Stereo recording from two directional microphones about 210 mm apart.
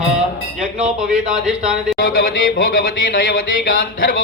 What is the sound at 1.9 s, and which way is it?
Speech, 45° left (ahead or behind).